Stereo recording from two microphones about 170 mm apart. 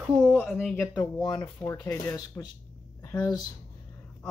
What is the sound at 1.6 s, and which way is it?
Speech, 15° left (ahead or behind).